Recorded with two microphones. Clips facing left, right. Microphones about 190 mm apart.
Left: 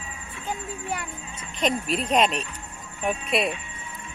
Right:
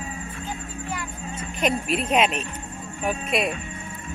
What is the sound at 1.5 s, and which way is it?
Speech, 5° right (ahead or behind).